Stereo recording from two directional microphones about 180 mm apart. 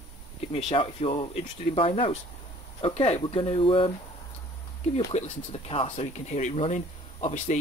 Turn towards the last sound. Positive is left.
turn(degrees=40)  # may be behind; listen again after turning